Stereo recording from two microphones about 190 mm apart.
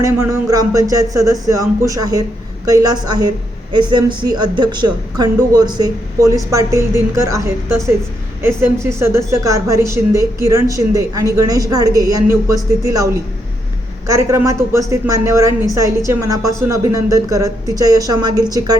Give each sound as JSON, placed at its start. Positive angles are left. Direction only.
{"t": 0.0, "sound": "a woman's voice", "side_deg": -15}
{"t": 14.1, "sound": "speech", "side_deg": -15}